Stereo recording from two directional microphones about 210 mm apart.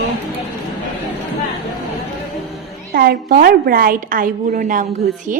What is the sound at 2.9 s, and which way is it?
A woman's voice, 45° right (ahead or behind).